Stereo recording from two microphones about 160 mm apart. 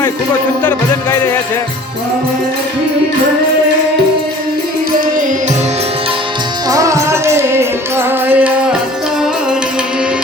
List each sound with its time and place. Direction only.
1.1 s music: 15° left (ahead or behind)
6.7 s music: 20° right (ahead or behind)